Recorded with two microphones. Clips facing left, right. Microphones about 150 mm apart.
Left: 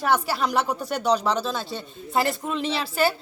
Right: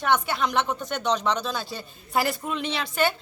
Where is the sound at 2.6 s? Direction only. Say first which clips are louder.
Left 4 dB; 30° left (ahead or behind).